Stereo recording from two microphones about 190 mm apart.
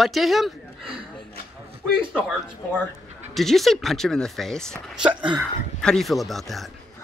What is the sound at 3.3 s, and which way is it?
Speech, centre (ahead or behind).